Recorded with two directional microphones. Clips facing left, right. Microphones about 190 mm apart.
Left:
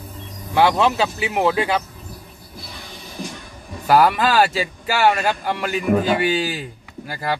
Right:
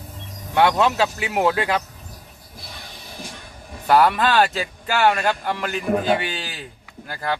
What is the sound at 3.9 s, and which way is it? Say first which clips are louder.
Speech: left 1 dB; 5° left (ahead or behind).